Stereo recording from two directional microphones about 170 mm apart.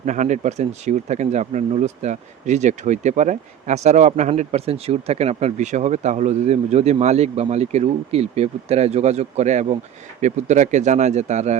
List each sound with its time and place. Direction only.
0.0 s speech: 45° right (ahead or behind)